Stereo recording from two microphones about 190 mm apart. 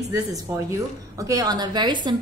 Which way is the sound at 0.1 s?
15° right (ahead or behind).